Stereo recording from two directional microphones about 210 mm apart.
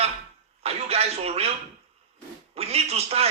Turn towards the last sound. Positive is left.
turn(degrees=-30)  # may be behind; listen again after turning